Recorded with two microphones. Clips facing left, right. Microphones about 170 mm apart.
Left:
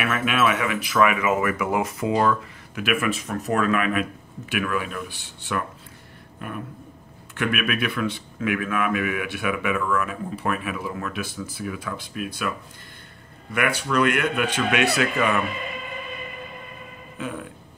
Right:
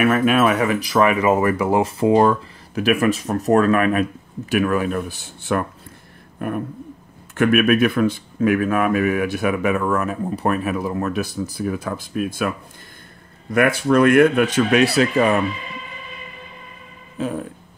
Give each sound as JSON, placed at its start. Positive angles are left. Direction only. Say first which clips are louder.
{"t": 0.0, "sound": "speech", "louder": "right 7 dB", "side_deg": -40}
{"t": 7.3, "sound": "speech", "louder": "right 10 dB", "side_deg": -45}
{"t": 13.5, "sound": "speech", "louder": "right 8 dB", "side_deg": -45}
{"t": 17.2, "sound": "speech", "louder": "right 7 dB", "side_deg": -40}